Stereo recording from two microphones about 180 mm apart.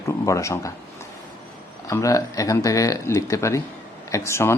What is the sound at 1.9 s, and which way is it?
Speech, 15° left (ahead or behind).